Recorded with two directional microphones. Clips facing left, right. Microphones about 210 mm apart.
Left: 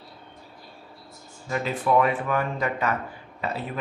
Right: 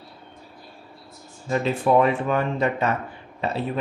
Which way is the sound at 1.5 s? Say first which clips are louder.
Right 3 dB; 25° right (ahead or behind).